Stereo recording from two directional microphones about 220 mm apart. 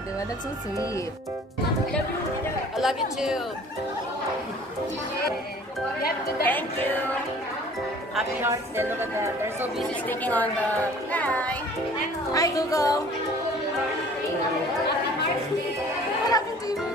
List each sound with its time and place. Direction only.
2.8 s a woman's voice: centre (ahead or behind)
6.4 s speech: 10° left (ahead or behind)
8.2 s speech: 10° right (ahead or behind)
9.8 s speech: 5° left (ahead or behind)
16.3 s music: 15° left (ahead or behind)